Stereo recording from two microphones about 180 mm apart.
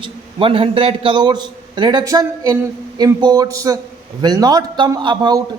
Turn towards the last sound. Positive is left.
turn(degrees=-25)  # may be behind; listen again after turning